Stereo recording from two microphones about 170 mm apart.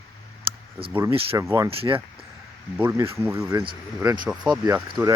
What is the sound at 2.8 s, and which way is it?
Speech, 15° right (ahead or behind).